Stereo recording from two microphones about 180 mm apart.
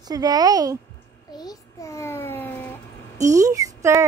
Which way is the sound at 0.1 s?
20° right (ahead or behind).